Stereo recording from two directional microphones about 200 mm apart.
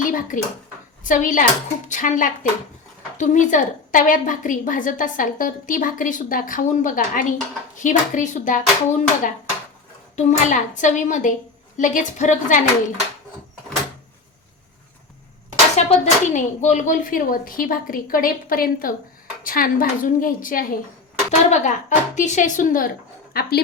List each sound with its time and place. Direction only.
0.0 s a sound: 40° left (ahead or behind)
1.0 s a woman's voice: 40° left (ahead or behind)
15.7 s a woman's voice: 35° left (ahead or behind); by 23.6 s 50° left (ahead or behind)